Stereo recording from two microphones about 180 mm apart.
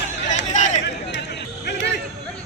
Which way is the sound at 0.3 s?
40° left (ahead or behind).